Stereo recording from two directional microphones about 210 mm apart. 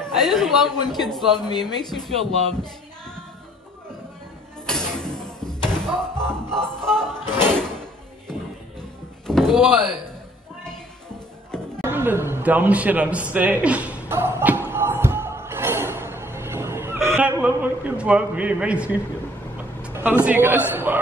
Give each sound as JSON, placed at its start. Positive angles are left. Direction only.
{"t": 0.0, "sound": "a man's voice", "side_deg": 0}
{"t": 1.5, "sound": "speech", "side_deg": 20}
{"t": 2.1, "sound": "speech", "side_deg": -25}
{"t": 4.6, "sound": "music", "side_deg": 5}
{"t": 7.4, "sound": "drawer open or close", "side_deg": 5}
{"t": 9.3, "sound": "door", "side_deg": 0}
{"t": 11.8, "sound": "a sound", "side_deg": -10}
{"t": 19.8, "sound": "a man's voice", "side_deg": -10}